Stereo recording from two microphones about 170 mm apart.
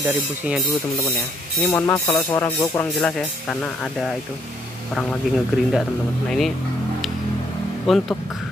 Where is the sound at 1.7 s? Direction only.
15° left (ahead or behind).